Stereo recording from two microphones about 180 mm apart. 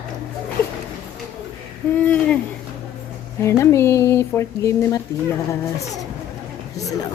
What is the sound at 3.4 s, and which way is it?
Speech, 15° left (ahead or behind).